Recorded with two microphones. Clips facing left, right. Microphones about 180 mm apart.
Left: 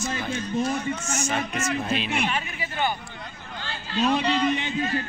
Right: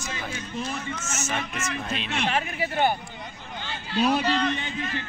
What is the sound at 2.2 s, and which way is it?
Speech, 65° right (ahead or behind).